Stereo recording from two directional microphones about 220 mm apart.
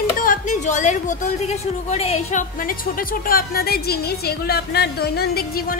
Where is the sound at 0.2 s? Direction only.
35° left (ahead or behind).